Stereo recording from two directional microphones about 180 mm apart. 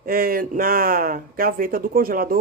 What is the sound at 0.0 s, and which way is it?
A man's voice, 55° right (ahead or behind).